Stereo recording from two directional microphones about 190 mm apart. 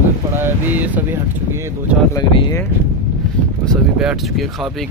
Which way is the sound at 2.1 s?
20° left (ahead or behind).